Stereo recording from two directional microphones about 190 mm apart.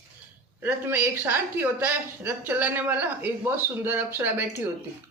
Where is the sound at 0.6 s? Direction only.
10° right (ahead or behind).